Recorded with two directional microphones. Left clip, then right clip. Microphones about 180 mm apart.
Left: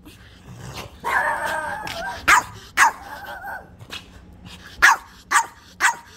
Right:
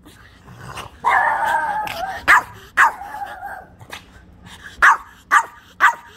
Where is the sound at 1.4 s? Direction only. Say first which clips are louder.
Right 7 dB; 10° left (ahead or behind).